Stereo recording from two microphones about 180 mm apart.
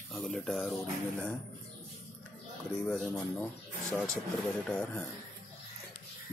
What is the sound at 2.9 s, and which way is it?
Speech, 5° left (ahead or behind).